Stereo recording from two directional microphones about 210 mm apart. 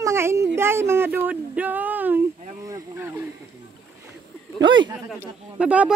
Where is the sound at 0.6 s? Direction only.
10° right (ahead or behind).